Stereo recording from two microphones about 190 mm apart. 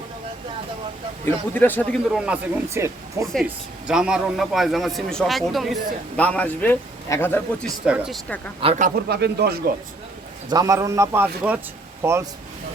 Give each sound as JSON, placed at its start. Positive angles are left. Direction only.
{"t": 1.2, "sound": "a man's voice", "side_deg": 10}
{"t": 2.0, "sound": "a man's voice", "side_deg": -5}
{"t": 7.9, "sound": "speech", "side_deg": -5}
{"t": 8.6, "sound": "speech", "side_deg": -35}
{"t": 9.0, "sound": "speech", "side_deg": -60}
{"t": 10.5, "sound": "speech", "side_deg": -20}